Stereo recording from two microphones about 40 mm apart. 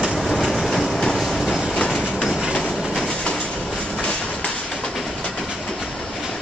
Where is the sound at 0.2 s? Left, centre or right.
Centre.